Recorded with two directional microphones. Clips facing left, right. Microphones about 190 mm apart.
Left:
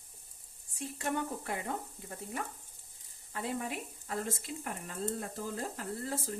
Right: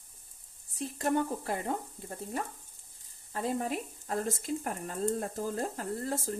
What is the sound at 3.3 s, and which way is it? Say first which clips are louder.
Speech: right 5 dB; 40° right (ahead or behind).